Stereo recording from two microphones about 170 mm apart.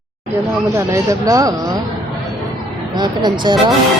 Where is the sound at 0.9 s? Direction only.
20° right (ahead or behind).